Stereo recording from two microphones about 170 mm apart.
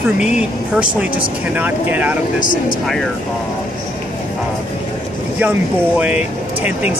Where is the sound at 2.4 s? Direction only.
50° left (ahead or behind).